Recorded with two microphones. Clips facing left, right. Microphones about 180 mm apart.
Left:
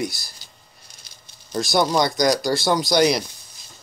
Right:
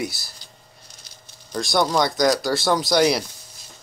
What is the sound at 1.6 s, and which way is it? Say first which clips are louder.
Speech: left 1 dB; 5° left (ahead or behind).